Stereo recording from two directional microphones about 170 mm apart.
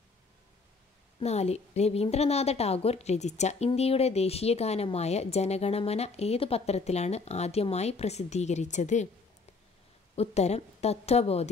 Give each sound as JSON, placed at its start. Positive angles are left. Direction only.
{"t": 1.2, "sound": "a woman's voice", "side_deg": 40}
{"t": 10.1, "sound": "a woman's voice", "side_deg": 40}